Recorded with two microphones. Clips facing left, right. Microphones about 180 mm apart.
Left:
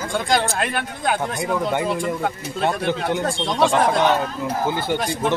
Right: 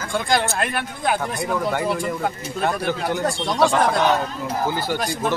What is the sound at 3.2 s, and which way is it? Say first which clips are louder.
Speech: even; 10° right (ahead or behind).